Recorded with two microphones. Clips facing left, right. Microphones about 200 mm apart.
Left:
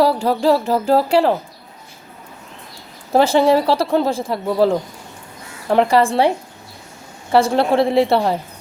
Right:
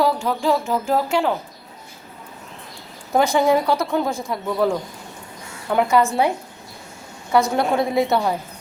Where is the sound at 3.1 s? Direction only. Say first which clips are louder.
Left 4 dB; 30° left (ahead or behind).